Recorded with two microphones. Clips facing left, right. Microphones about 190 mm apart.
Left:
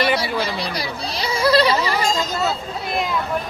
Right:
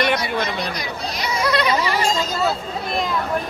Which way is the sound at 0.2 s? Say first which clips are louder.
Even; 30° left (ahead or behind).